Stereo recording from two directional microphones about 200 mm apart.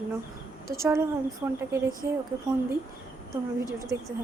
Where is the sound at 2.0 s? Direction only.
55° right (ahead or behind).